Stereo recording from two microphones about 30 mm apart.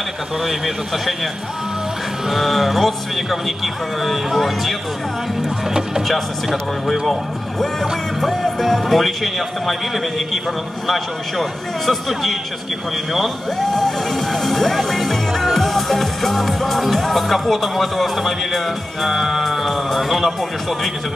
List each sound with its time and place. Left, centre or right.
2.2 s music: centre
5.7 s speech: right
6.0 s music: centre
19.0 s speech: centre